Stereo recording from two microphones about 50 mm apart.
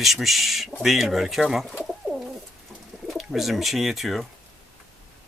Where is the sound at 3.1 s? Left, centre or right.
Centre.